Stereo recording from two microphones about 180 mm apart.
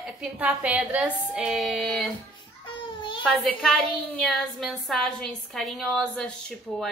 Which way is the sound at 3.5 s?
5° left (ahead or behind).